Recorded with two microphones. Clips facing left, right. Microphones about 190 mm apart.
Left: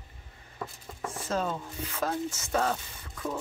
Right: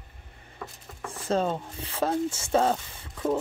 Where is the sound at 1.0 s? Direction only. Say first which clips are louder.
Right 4 dB; 30° right (ahead or behind).